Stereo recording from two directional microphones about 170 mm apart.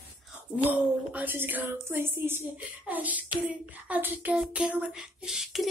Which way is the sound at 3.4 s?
10° right (ahead or behind).